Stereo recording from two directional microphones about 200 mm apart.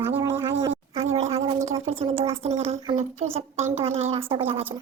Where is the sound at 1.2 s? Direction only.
30° right (ahead or behind).